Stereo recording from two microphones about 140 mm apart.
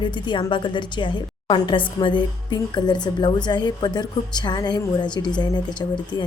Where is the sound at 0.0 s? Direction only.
35° left (ahead or behind).